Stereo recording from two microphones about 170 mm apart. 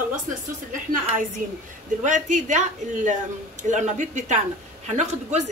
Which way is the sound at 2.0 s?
45° right (ahead or behind).